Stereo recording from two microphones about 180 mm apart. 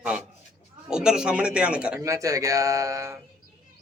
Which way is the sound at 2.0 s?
15° right (ahead or behind).